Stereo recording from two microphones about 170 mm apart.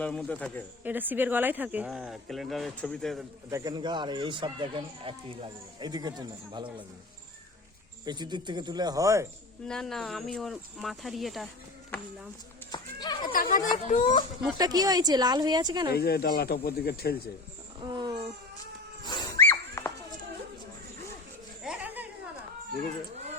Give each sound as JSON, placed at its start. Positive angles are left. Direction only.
{"t": 0.0, "sound": "speech", "side_deg": 5}
{"t": 0.9, "sound": "speech", "side_deg": -10}
{"t": 3.5, "sound": "speech", "side_deg": -20}
{"t": 8.0, "sound": "speech", "side_deg": -25}
{"t": 9.6, "sound": "speech", "side_deg": 5}
{"t": 12.7, "sound": "speech", "side_deg": 25}
{"t": 13.3, "sound": "speech", "side_deg": 55}
{"t": 14.6, "sound": "speech", "side_deg": -20}
{"t": 15.9, "sound": "speech", "side_deg": 70}
{"t": 17.9, "sound": "a sound", "side_deg": -25}
{"t": 19.0, "sound": "wild animals", "side_deg": 25}
{"t": 19.5, "sound": "horse", "side_deg": 15}
{"t": 21.6, "sound": "a sound", "side_deg": -5}